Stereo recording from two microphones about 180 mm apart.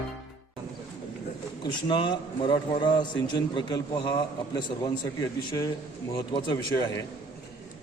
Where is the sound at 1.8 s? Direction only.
25° left (ahead or behind).